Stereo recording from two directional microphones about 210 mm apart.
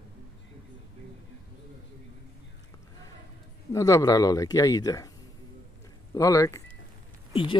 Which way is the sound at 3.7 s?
15° left (ahead or behind).